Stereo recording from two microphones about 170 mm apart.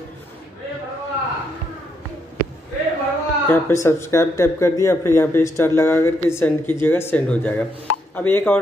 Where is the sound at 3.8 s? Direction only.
15° left (ahead or behind).